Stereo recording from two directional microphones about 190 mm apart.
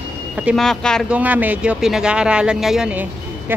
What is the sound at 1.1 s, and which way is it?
Speech, 10° right (ahead or behind).